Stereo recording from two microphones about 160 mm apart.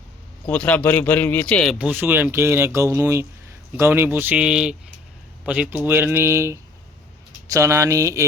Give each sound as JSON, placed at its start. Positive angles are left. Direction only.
{"t": 0.4, "sound": "speech", "side_deg": 10}
{"t": 1.8, "sound": "speech", "side_deg": -10}